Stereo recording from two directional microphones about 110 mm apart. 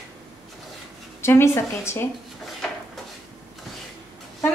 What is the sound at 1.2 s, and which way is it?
Speech, 20° left (ahead or behind).